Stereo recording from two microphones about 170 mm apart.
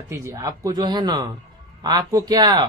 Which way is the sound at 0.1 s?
15° right (ahead or behind).